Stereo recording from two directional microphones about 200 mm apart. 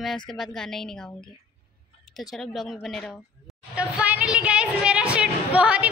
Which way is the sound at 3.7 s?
5° right (ahead or behind).